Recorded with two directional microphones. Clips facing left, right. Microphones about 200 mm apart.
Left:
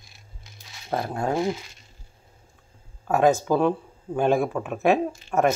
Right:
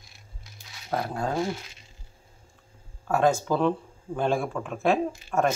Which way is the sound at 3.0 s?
15° left (ahead or behind).